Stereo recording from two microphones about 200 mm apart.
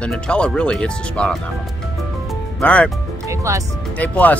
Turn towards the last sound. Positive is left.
turn(degrees=10)  # may be behind; listen again after turning